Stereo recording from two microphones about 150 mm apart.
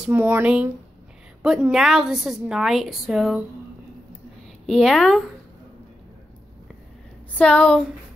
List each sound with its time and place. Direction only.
0.0 s a woman's voice: 15° right (ahead or behind)
4.6 s a woman's voice: 5° left (ahead or behind)
7.3 s speech: 5° left (ahead or behind)